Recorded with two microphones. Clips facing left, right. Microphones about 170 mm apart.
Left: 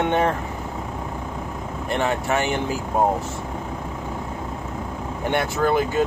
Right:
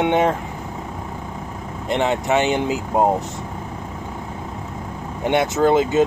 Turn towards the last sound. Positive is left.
turn(degrees=-20)  # may be behind; listen again after turning